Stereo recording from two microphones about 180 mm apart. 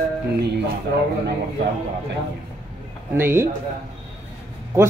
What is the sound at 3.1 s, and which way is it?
Speech, 10° right (ahead or behind).